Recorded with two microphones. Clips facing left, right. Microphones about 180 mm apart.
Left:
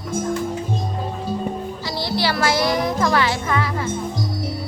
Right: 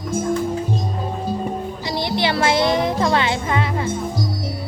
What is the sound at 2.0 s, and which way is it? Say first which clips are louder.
Music: right 1 dB; 20° right (ahead or behind).